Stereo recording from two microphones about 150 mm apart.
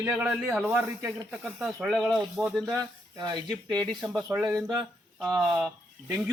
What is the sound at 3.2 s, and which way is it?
Speech, 25° right (ahead or behind).